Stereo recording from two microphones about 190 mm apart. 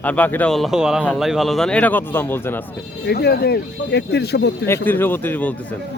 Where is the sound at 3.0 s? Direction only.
60° left (ahead or behind).